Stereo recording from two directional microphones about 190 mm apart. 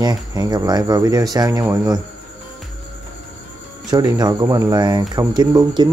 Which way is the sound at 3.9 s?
20° right (ahead or behind).